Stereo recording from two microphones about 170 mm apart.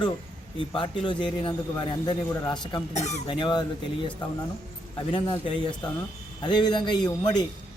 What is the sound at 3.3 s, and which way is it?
Speech, 25° left (ahead or behind).